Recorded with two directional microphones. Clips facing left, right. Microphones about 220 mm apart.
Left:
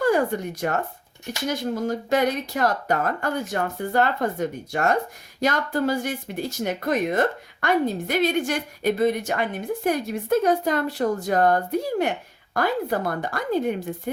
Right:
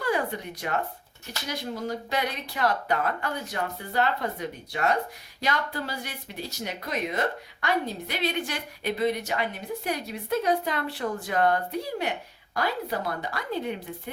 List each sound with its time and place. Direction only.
0.0 s speech: 45° left (ahead or behind)